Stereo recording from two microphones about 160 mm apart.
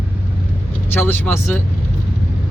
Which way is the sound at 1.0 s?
15° left (ahead or behind).